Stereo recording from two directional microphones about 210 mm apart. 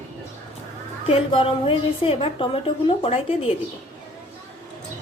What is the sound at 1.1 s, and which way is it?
A woman's voice, 25° left (ahead or behind).